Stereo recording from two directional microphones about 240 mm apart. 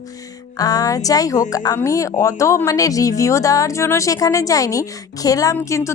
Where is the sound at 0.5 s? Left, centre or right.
Centre.